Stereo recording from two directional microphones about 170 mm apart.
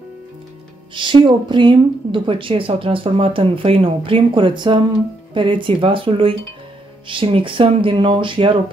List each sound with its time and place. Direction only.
0.9 s a woman's voice: 30° right (ahead or behind)